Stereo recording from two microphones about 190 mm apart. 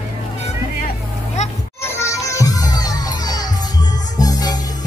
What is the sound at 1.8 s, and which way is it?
Music, 15° left (ahead or behind).